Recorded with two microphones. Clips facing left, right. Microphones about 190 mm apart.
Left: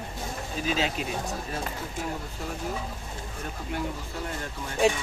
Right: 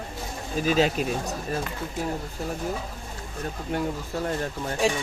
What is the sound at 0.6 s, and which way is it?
Speech, 45° right (ahead or behind).